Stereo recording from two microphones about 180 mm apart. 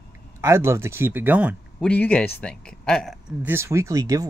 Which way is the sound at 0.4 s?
15° right (ahead or behind).